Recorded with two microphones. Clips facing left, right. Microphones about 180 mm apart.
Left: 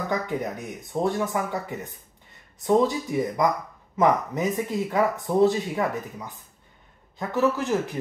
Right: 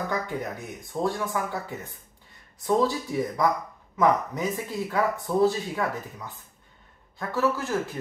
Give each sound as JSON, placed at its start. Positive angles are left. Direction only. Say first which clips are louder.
{"t": 0.1, "sound": "speech", "louder": "left 3 dB", "side_deg": 20}